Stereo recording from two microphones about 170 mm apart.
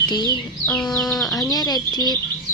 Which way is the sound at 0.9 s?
Centre (ahead or behind).